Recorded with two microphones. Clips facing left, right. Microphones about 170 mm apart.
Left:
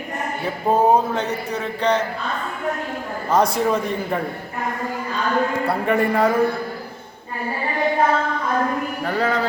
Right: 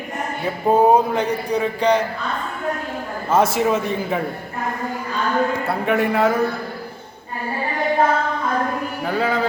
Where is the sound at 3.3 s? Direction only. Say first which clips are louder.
Right 1 dB; 5° right (ahead or behind).